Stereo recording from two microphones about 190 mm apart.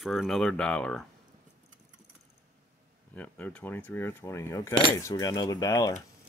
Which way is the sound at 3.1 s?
10° left (ahead or behind).